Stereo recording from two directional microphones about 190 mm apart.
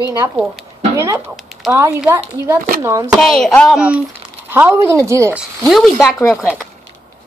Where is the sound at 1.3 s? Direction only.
Centre (ahead or behind).